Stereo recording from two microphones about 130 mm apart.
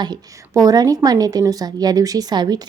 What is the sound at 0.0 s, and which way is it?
A woman's voice, 30° right (ahead or behind).